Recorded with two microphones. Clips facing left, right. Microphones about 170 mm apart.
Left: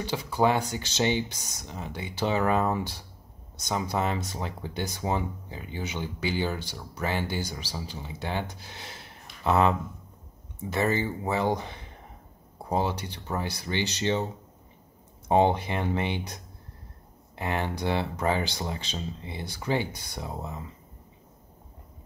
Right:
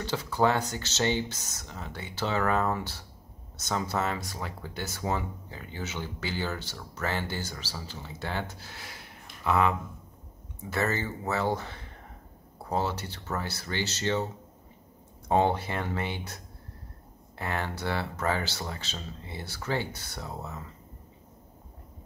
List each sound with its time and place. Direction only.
0.0 s speech: 15° left (ahead or behind)
17.4 s speech: 20° left (ahead or behind)